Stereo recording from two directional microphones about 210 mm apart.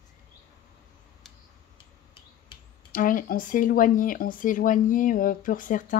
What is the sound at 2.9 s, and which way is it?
Speech, 40° left (ahead or behind).